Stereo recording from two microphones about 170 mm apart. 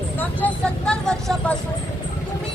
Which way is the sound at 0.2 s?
10° left (ahead or behind).